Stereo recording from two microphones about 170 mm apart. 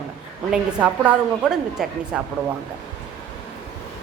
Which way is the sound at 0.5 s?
5° right (ahead or behind).